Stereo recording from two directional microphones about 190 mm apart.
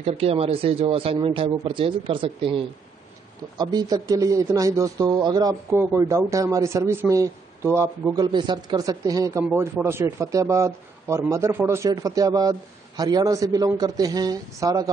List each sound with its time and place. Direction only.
0.0 s a man's voice: 30° right (ahead or behind)